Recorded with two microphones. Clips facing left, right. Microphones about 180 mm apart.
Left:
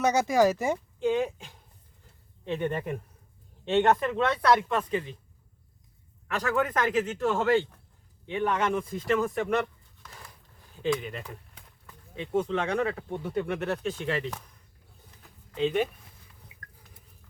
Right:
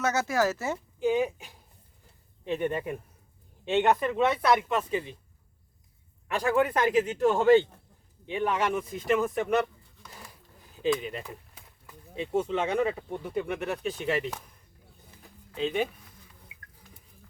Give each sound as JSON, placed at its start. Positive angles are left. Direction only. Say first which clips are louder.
{"t": 0.0, "sound": "speech", "louder": "left 4 dB", "side_deg": 15}
{"t": 0.9, "sound": "speech", "louder": "right 4 dB", "side_deg": -5}
{"t": 4.2, "sound": "speech", "louder": "even", "side_deg": -20}
{"t": 4.9, "sound": "speech", "louder": "left 1 dB", "side_deg": -10}
{"t": 6.3, "sound": "speech", "louder": "right 2 dB", "side_deg": -30}
{"t": 6.8, "sound": "speech", "louder": "right 3 dB", "side_deg": -15}
{"t": 9.3, "sound": "pigeon", "louder": "right 1 dB", "side_deg": 0}
{"t": 10.8, "sound": "a sound", "louder": "right 1 dB", "side_deg": -5}
{"t": 12.2, "sound": "speech", "louder": "even", "side_deg": -5}
{"t": 15.5, "sound": "speech", "louder": "left 2 dB", "side_deg": 0}